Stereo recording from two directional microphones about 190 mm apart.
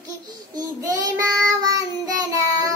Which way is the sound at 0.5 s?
20° right (ahead or behind).